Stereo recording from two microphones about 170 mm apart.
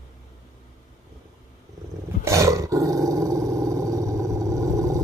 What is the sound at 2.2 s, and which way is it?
Dog, 20° right (ahead or behind).